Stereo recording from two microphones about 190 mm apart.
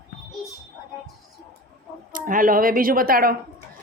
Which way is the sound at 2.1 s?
45° right (ahead or behind).